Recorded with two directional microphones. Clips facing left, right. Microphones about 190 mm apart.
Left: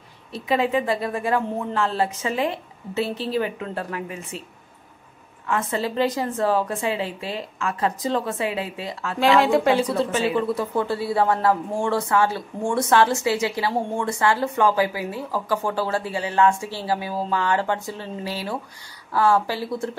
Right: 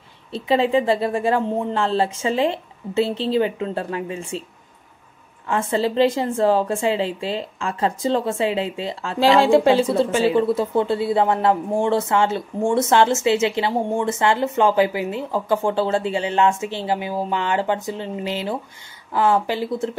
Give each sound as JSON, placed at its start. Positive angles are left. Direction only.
{"t": 0.3, "sound": "a woman's voice", "side_deg": -30}
{"t": 5.5, "sound": "a woman's voice", "side_deg": -30}